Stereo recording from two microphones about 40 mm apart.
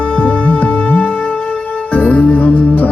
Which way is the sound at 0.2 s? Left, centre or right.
Left.